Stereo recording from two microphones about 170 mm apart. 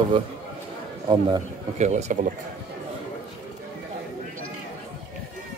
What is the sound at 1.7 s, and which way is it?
Speech, 45° right (ahead or behind).